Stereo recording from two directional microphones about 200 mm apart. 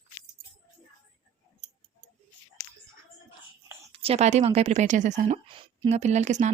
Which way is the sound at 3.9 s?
30° right (ahead or behind).